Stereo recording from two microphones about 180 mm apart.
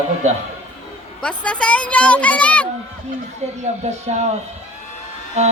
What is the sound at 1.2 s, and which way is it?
A woman's voice, 5° left (ahead or behind).